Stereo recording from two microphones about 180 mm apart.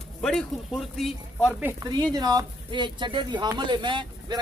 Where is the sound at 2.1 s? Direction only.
20° right (ahead or behind).